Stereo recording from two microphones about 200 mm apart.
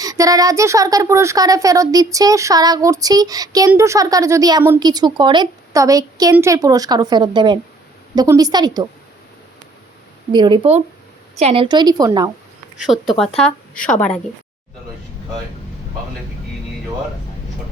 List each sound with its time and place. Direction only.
0.0 s a woman's voice: 15° right (ahead or behind)
10.3 s a woman's voice: 25° right (ahead or behind)
12.8 s a woman's voice: centre (ahead or behind)